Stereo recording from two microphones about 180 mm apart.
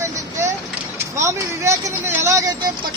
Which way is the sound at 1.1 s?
15° right (ahead or behind).